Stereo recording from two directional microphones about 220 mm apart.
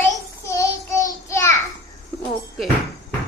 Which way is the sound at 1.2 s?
15° left (ahead or behind).